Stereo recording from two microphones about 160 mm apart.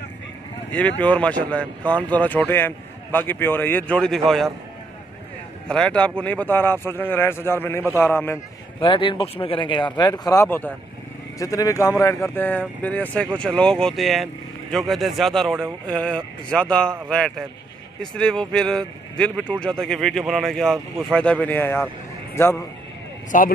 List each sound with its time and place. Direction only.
0.7 s speech: 10° left (ahead or behind)
5.7 s speech: 5° left (ahead or behind)
8.7 s a man's voice: 30° left (ahead or behind); by 22.6 s 15° left (ahead or behind)
23.3 s speech: 55° left (ahead or behind)